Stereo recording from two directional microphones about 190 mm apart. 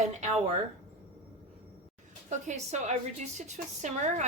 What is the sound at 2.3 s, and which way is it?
A woman's voice, 40° right (ahead or behind).